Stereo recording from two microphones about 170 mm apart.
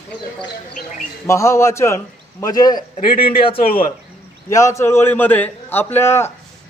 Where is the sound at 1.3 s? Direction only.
15° left (ahead or behind).